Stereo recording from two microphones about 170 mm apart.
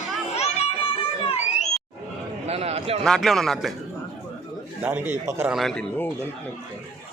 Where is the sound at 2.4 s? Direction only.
40° right (ahead or behind).